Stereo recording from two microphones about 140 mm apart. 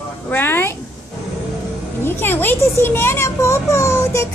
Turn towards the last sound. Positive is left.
turn(degrees=20)  # may be behind; listen again after turning